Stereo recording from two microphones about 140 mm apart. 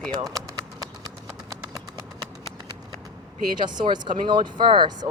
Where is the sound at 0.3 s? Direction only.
Centre (ahead or behind).